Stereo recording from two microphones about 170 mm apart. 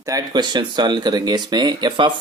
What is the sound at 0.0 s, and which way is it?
Speech, 20° right (ahead or behind).